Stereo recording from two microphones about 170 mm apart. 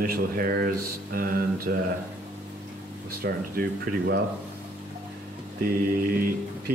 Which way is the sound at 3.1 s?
60° right (ahead or behind).